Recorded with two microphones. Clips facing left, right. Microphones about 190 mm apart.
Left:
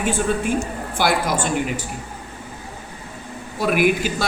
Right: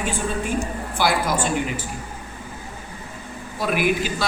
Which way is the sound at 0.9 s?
55° left (ahead or behind).